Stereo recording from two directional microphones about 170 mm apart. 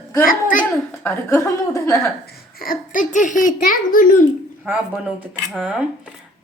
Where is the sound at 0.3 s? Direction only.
55° left (ahead or behind).